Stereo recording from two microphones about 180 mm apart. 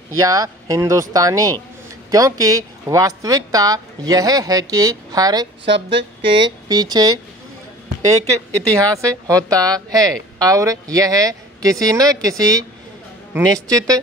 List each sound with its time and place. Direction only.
0.2 s speech: 20° right (ahead or behind)
5.7 s music: 80° right
6.2 s speech: 25° right (ahead or behind)
8.7 s a woman's voice: 15° right (ahead or behind)